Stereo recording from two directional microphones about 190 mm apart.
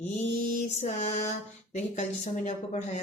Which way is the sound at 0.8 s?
35° left (ahead or behind).